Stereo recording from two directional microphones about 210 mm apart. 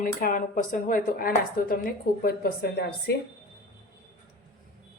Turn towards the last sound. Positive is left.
turn(degrees=50)  # may be behind; listen again after turning